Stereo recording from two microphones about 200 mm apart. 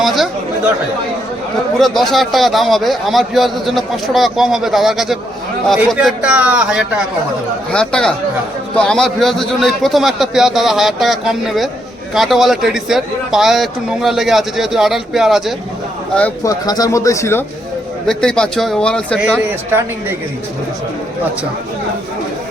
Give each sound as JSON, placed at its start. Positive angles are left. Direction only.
{"t": 0.0, "sound": "chatter", "side_deg": 0}
{"t": 1.8, "sound": "a man's voice", "side_deg": 0}
{"t": 16.1, "sound": "speech", "side_deg": 10}
{"t": 18.0, "sound": "a man's voice", "side_deg": 5}
{"t": 19.4, "sound": "a woman's voice", "side_deg": -10}